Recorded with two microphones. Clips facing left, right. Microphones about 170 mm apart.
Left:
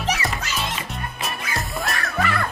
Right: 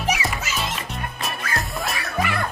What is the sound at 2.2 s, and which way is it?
Music, 15° right (ahead or behind).